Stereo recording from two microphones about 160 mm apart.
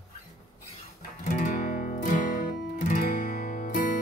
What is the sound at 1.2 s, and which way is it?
Music, 55° left (ahead or behind).